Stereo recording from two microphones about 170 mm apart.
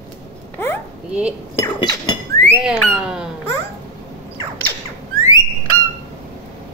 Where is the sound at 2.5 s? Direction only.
5° right (ahead or behind).